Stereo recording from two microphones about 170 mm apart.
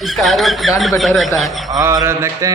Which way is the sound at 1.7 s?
20° right (ahead or behind).